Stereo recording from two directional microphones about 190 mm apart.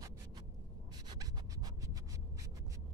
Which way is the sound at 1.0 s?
20° right (ahead or behind).